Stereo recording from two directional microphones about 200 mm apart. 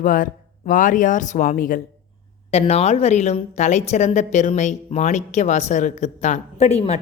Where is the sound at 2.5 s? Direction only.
30° left (ahead or behind).